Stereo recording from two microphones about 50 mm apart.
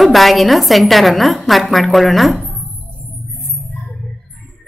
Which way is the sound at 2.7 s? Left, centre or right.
Left.